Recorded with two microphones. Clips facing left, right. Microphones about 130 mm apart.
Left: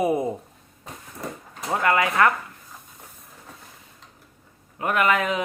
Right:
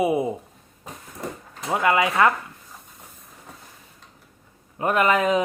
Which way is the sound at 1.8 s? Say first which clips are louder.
Right 1 dB; 20° right (ahead or behind).